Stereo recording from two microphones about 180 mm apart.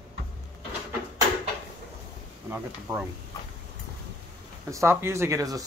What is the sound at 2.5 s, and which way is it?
Speech, 10° right (ahead or behind).